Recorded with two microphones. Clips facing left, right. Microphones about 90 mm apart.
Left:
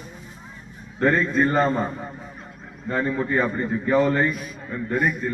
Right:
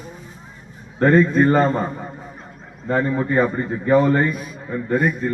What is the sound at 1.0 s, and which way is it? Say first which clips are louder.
Speech: right 5 dB; 45° right (ahead or behind).